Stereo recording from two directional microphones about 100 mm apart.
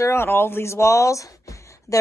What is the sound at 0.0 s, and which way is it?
Speech, 25° left (ahead or behind).